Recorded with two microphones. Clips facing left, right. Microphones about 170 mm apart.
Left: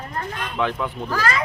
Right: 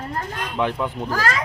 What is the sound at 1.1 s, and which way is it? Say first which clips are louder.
Speech: left 1 dB; 45° right (ahead or behind).